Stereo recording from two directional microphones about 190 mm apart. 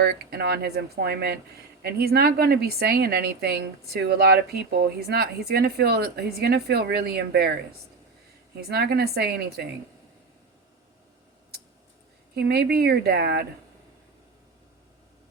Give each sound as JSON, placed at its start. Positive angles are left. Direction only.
{"t": 0.0, "sound": "a woman's voice", "side_deg": -55}
{"t": 8.5, "sound": "a woman's voice", "side_deg": -60}
{"t": 11.5, "sound": "a sound", "side_deg": -55}
{"t": 12.3, "sound": "a woman's voice", "side_deg": -55}